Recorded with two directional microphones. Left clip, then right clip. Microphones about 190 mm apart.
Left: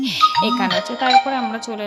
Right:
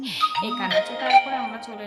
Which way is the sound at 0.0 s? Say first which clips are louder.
Left 8 dB; 30° left (ahead or behind).